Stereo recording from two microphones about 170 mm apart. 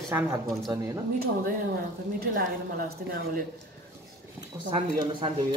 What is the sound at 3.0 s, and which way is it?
Speech, 55° right (ahead or behind).